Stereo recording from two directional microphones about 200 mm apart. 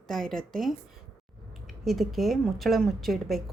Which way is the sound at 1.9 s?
Centre (ahead or behind).